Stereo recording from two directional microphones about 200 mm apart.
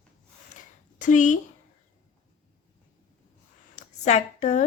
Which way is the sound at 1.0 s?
40° left (ahead or behind).